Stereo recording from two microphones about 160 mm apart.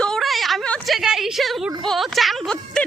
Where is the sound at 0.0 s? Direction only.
Centre (ahead or behind).